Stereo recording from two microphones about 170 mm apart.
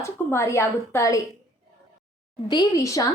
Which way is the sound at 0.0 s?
15° left (ahead or behind).